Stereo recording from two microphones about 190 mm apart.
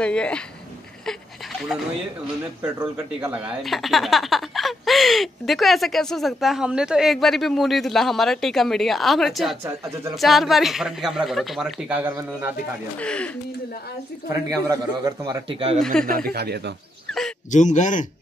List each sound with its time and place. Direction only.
0.0 s speech: 5° left (ahead or behind)
2.6 s speech: 10° right (ahead or behind)
9.6 s speech: 15° right (ahead or behind)
10.1 s speech: centre (ahead or behind)
13.0 s speech: 5° left (ahead or behind)
14.3 s a man's voice: 15° right (ahead or behind)
15.8 s speech: 5° left (ahead or behind)
16.1 s speech: 50° right (ahead or behind)
17.5 s speech: 40° left (ahead or behind)